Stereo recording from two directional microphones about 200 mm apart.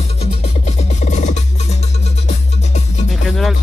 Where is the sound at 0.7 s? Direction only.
35° left (ahead or behind).